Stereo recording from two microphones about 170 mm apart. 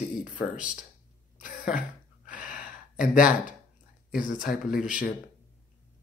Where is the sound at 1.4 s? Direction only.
50° left (ahead or behind).